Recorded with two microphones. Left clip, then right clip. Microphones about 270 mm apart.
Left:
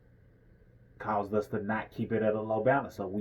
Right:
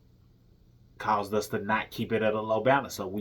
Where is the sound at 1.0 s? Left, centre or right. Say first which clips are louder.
Right 3 dB; centre.